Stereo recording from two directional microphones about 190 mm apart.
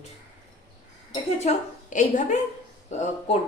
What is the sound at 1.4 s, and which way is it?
A woman's voice, 40° left (ahead or behind).